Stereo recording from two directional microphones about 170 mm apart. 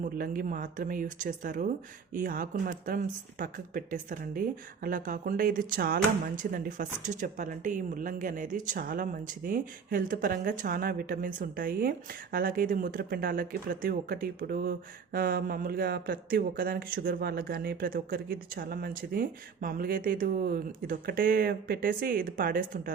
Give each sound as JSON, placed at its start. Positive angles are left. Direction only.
{"t": 0.0, "sound": "speech", "side_deg": -55}